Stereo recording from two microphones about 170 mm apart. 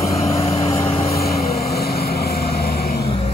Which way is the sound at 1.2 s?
65° left (ahead or behind).